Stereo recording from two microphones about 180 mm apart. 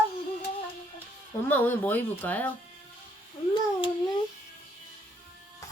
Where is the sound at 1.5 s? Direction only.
10° left (ahead or behind).